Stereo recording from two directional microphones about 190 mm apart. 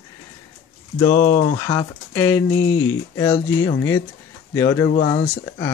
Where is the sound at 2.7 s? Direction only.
90° left.